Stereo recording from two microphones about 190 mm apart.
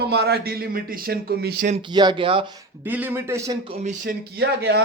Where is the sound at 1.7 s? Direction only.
25° right (ahead or behind).